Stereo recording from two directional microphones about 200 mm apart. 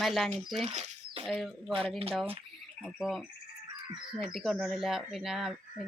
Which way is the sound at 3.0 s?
Centre (ahead or behind).